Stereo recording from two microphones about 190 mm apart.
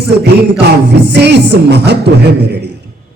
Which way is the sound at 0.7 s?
65° right (ahead or behind).